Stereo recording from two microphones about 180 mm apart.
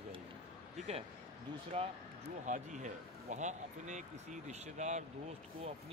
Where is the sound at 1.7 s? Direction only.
30° right (ahead or behind).